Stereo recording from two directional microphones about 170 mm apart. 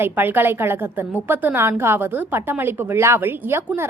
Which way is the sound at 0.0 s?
10° right (ahead or behind).